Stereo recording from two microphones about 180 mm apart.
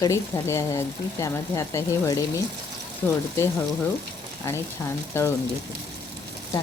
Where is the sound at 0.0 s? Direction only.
15° left (ahead or behind).